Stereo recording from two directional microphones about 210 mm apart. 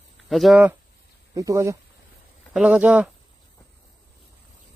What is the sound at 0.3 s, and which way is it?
Speech, centre (ahead or behind).